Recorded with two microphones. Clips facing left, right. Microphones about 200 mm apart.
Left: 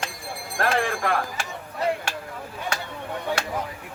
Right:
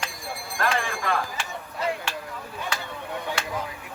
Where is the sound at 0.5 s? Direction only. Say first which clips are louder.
Left 3 dB; 55° left (ahead or behind).